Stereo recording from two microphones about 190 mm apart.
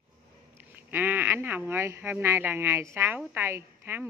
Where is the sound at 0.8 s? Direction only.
10° right (ahead or behind).